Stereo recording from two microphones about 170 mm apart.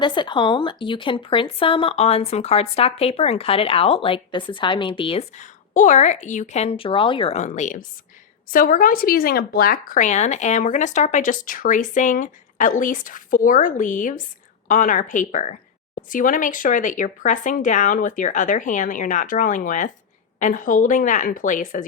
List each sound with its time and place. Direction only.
0.0 s speech: 25° left (ahead or behind)
5.4 s speech: 45° left (ahead or behind)
8.4 s speech: 55° left (ahead or behind)